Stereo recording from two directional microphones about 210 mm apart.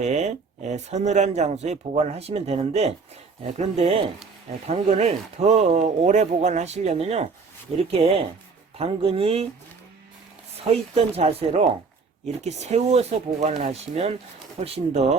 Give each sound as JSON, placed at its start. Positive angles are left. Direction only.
{"t": 0.0, "sound": "speech", "side_deg": -35}
{"t": 10.6, "sound": "speech", "side_deg": -30}